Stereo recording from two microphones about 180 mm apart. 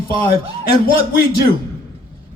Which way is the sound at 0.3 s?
55° left (ahead or behind).